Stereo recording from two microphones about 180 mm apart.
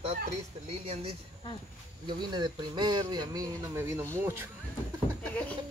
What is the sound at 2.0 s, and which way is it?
Speech, 25° right (ahead or behind).